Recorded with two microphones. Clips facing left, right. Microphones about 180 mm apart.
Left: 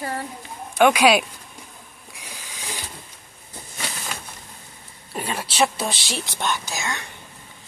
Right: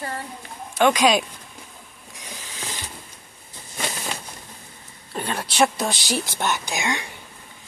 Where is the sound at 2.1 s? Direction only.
10° left (ahead or behind).